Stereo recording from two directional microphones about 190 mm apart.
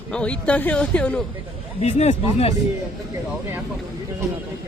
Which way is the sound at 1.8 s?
35° left (ahead or behind).